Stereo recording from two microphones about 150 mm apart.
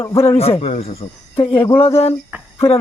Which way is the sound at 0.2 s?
40° left (ahead or behind).